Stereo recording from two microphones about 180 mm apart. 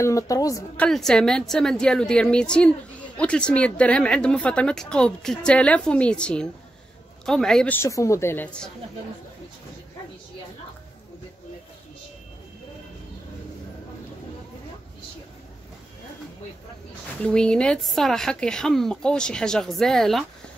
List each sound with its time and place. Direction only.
0.0 s a woman's voice: 20° left (ahead or behind)
0.7 s a woman's voice: 5° left (ahead or behind)
17.2 s speech: 5° left (ahead or behind)